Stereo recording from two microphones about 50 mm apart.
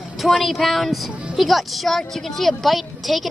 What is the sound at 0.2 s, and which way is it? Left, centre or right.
A woman's voice, centre.